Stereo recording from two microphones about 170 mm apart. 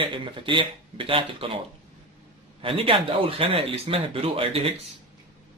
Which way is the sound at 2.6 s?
30° right (ahead or behind).